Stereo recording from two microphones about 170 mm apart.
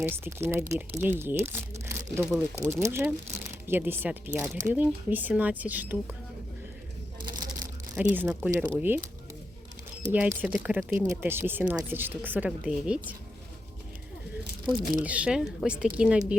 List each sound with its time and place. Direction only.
0.0 s speech: 15° right (ahead or behind)
7.2 s crushing: 25° right (ahead or behind)
8.1 s speech: 10° right (ahead or behind)
10.1 s speech: 10° right (ahead or behind)
15.0 s a woman's voice: 5° right (ahead or behind)